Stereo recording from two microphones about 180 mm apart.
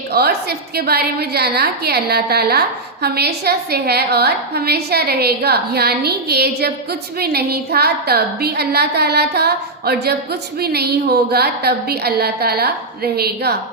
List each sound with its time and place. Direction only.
0.1 s a woman's voice: 60° right (ahead or behind)